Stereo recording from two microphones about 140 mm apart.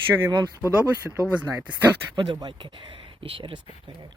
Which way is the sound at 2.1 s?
35° right (ahead or behind).